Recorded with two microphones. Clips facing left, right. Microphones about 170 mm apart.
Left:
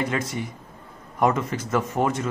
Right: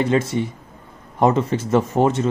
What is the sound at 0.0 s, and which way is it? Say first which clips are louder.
Speech: right 7 dB; 25° right (ahead or behind).